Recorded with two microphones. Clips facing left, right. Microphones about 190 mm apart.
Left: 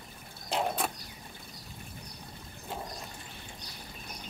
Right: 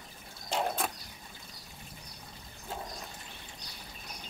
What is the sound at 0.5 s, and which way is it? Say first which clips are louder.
Mechanisms: left 1 dB; centre (ahead or behind).